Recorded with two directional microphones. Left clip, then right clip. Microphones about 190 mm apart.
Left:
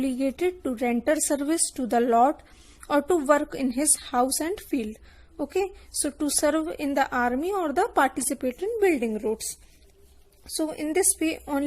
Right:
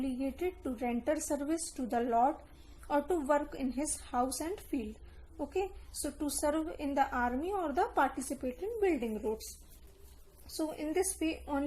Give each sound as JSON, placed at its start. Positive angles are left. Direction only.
{"t": 0.0, "sound": "a woman's voice", "side_deg": 45}
{"t": 10.4, "sound": "a woman's voice", "side_deg": 40}